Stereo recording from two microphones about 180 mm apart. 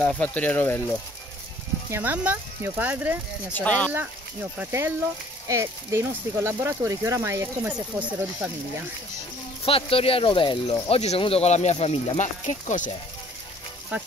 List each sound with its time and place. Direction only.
0.0 s speech: 5° left (ahead or behind)
1.9 s speech: 10° right (ahead or behind)
3.5 s speech: 10° left (ahead or behind)
3.9 s speech: 10° right (ahead or behind)
9.7 s speech: 30° left (ahead or behind)